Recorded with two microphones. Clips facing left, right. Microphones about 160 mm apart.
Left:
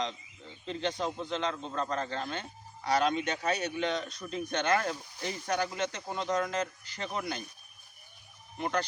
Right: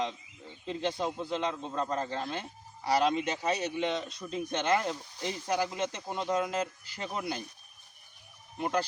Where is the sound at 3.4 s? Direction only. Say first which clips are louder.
Even; 25° right (ahead or behind).